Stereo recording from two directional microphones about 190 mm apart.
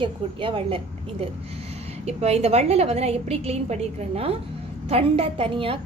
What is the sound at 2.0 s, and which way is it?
A woman's voice, 35° right (ahead or behind).